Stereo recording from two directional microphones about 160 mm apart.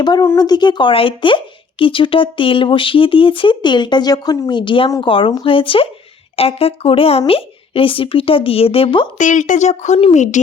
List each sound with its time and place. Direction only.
0.0 s speech: 25° left (ahead or behind)
9.1 s speech: 50° left (ahead or behind)